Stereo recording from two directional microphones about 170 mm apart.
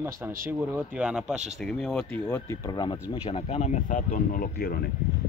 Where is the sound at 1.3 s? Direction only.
40° right (ahead or behind).